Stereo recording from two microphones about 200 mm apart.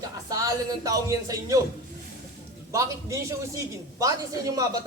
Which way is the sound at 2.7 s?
15° right (ahead or behind).